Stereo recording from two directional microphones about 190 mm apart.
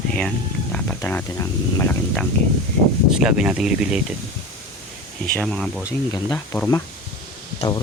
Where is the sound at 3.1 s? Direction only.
5° right (ahead or behind).